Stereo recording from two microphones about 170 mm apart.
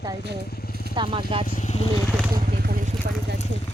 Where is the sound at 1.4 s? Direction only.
50° left (ahead or behind).